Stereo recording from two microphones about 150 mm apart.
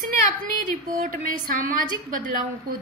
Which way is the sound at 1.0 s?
75° right (ahead or behind).